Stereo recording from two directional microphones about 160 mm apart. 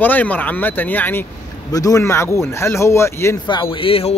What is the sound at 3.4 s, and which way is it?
Speech, 30° left (ahead or behind).